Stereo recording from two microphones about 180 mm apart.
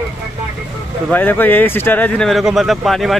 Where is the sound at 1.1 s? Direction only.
10° left (ahead or behind).